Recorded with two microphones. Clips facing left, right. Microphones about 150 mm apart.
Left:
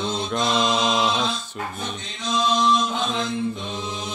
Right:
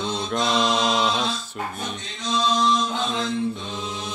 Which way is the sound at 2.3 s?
10° left (ahead or behind).